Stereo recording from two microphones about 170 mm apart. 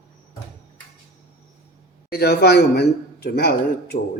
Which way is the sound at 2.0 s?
65° left (ahead or behind).